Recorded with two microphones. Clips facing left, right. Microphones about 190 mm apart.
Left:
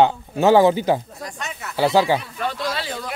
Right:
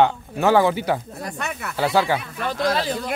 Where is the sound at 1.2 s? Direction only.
60° right (ahead or behind).